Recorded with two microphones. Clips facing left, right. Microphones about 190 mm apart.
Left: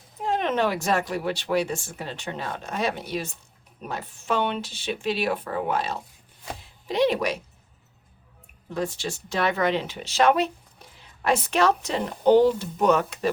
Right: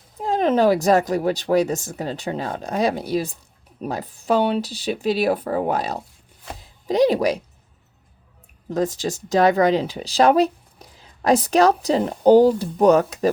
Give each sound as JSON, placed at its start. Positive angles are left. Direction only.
{"t": 0.2, "sound": "speech", "side_deg": -35}
{"t": 8.7, "sound": "speech", "side_deg": -40}